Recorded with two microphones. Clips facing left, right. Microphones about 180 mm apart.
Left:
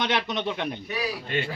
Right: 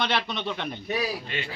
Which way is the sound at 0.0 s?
15° left (ahead or behind).